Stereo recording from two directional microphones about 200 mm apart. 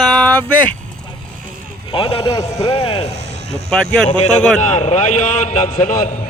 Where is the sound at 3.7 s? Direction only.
5° left (ahead or behind).